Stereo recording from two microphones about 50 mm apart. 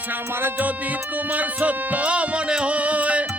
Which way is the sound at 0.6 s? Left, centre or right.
Right.